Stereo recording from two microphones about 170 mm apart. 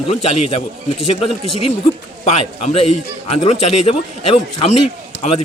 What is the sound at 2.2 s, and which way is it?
A man's voice, 40° left (ahead or behind).